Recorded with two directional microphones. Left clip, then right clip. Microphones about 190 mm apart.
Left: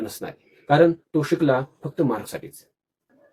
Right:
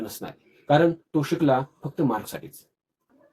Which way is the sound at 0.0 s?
15° left (ahead or behind).